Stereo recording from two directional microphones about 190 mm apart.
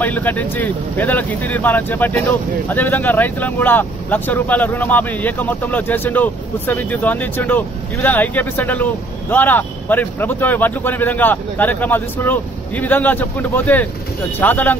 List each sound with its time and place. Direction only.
0.0 s speech: 10° left (ahead or behind)